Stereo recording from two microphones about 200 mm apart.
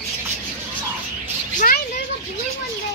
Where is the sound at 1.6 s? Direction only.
45° left (ahead or behind).